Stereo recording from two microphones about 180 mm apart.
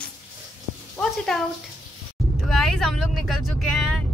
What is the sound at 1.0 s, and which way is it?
Speech, 5° left (ahead or behind).